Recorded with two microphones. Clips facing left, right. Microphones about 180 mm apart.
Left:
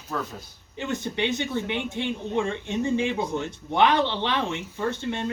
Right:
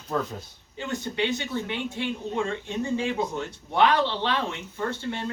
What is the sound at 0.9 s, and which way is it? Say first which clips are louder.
Speech: even; 20° left (ahead or behind).